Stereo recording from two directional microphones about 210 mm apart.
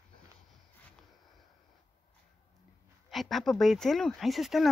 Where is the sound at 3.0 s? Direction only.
Centre (ahead or behind).